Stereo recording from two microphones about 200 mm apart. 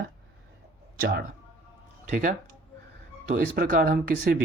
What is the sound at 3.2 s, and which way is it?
Speech, 45° right (ahead or behind).